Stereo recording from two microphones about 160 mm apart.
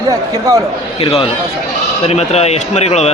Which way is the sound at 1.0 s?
35° left (ahead or behind).